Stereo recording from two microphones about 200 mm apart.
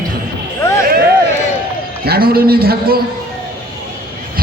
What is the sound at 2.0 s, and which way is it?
Speech, 50° right (ahead or behind).